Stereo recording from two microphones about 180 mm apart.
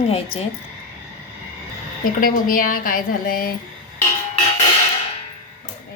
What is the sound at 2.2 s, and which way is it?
A woman's voice, 50° left (ahead or behind).